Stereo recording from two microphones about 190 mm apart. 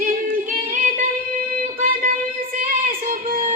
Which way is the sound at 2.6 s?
45° right (ahead or behind).